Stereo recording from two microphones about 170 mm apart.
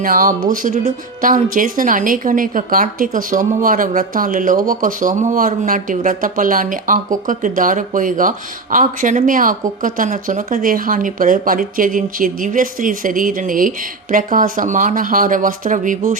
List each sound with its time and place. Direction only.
0.0 s speech: 55° right (ahead or behind)